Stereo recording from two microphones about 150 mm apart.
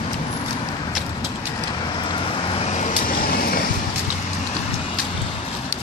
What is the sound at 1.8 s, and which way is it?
Vehicle, 30° left (ahead or behind).